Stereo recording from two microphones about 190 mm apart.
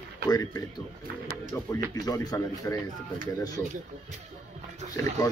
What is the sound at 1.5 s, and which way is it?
Speech, 20° left (ahead or behind).